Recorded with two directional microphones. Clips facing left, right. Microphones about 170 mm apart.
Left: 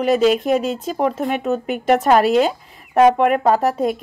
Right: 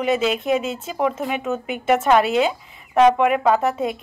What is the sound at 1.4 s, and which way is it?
Speech, 35° left (ahead or behind).